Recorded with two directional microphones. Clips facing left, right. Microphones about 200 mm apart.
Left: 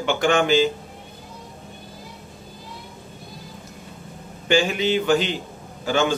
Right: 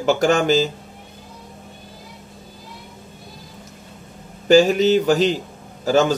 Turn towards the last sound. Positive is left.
turn(degrees=-40)  # may be behind; listen again after turning